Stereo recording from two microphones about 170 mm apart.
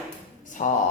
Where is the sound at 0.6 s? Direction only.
45° left (ahead or behind).